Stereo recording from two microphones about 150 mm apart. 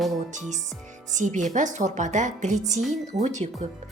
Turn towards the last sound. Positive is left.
turn(degrees=-50)  # may be behind; listen again after turning